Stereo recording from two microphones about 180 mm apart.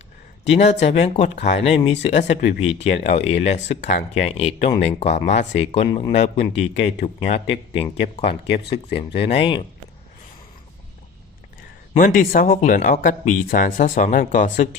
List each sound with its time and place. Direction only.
0.5 s speech: 35° left (ahead or behind)
11.9 s speech: 50° left (ahead or behind)